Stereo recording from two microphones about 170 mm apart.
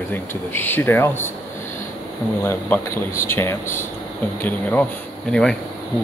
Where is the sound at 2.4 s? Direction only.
15° left (ahead or behind).